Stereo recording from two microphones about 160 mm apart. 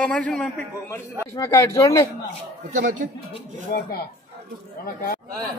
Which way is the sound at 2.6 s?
50° right (ahead or behind).